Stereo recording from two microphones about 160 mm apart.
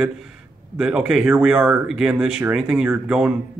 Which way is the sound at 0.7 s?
5° right (ahead or behind).